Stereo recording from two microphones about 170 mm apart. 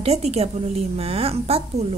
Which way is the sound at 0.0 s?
35° right (ahead or behind).